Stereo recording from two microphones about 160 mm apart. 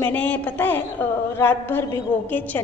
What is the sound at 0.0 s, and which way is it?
A woman's voice, 10° left (ahead or behind).